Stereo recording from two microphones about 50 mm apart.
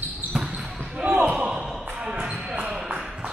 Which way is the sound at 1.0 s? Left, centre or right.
Right.